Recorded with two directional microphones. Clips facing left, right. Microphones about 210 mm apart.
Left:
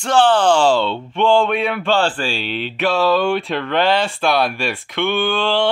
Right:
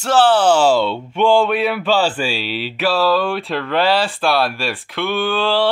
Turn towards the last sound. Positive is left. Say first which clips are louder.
# even
turn(degrees=-5)  # may be behind; listen again after turning